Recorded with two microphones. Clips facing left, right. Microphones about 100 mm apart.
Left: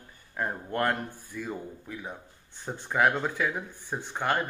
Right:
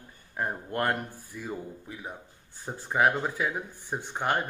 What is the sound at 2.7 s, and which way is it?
Speech, 5° right (ahead or behind).